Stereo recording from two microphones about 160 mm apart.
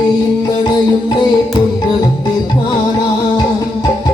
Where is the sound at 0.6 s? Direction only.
25° left (ahead or behind).